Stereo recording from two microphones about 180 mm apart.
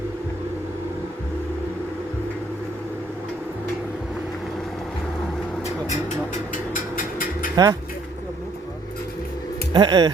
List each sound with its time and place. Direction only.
5.9 s a sound: 45° left (ahead or behind)
7.5 s speech: 20° right (ahead or behind)
9.7 s speech: 20° right (ahead or behind)